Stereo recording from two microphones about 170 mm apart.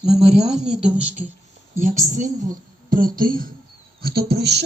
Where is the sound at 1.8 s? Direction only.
45° right (ahead or behind).